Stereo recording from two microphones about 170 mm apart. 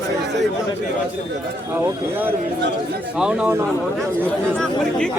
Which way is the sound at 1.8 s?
15° right (ahead or behind).